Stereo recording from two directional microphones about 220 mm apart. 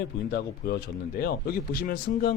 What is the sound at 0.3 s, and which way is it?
Speech, 50° left (ahead or behind).